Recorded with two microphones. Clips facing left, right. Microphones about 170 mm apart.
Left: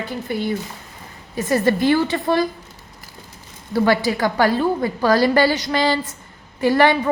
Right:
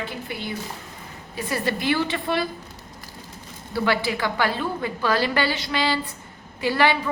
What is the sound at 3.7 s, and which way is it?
A woman's voice, 40° left (ahead or behind).